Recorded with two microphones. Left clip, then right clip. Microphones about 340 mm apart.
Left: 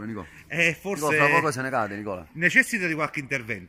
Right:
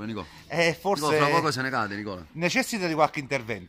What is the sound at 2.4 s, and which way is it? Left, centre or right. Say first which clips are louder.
Speech: left 6 dB; right.